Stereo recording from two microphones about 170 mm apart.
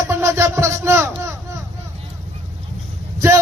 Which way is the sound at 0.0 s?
15° right (ahead or behind).